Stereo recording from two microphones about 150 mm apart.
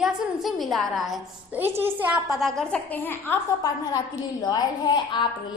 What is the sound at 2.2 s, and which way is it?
A woman's voice, centre (ahead or behind).